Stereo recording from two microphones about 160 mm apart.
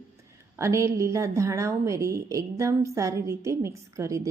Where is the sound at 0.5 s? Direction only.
20° right (ahead or behind).